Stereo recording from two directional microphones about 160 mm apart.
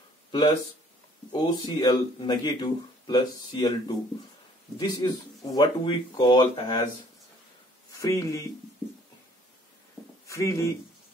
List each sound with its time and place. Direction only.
1.3 s speech: 25° left (ahead or behind)
7.9 s speech: 20° left (ahead or behind)
10.2 s speech: 20° left (ahead or behind)